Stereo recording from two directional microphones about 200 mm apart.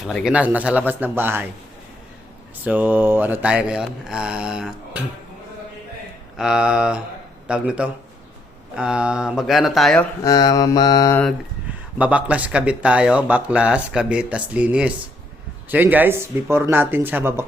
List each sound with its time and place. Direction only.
0.0 s speech: centre (ahead or behind)
2.6 s speech: 10° right (ahead or behind)
6.3 s speech: 5° right (ahead or behind)
10.2 s mantra: 20° left (ahead or behind)
11.9 s speech: 5° right (ahead or behind)